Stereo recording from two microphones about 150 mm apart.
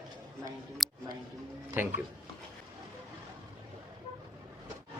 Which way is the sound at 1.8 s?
15° right (ahead or behind).